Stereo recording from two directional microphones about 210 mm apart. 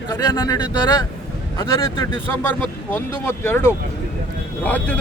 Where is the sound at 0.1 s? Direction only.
20° left (ahead or behind).